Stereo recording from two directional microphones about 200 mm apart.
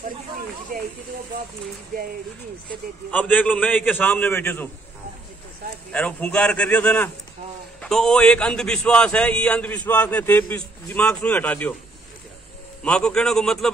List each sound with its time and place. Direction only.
0.7 s speech: 45° right (ahead or behind)
3.1 s a man's voice: 10° left (ahead or behind)
5.9 s a man's voice: 5° left (ahead or behind)
12.8 s a man's voice: 5° left (ahead or behind)